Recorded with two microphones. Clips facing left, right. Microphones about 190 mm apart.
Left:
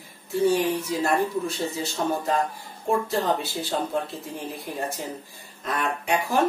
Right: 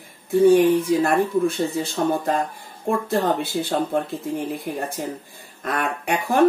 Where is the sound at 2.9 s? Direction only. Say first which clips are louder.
Right 1 dB; 55° right (ahead or behind).